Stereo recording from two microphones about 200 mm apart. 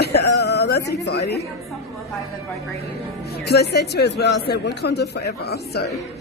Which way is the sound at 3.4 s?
55° left (ahead or behind).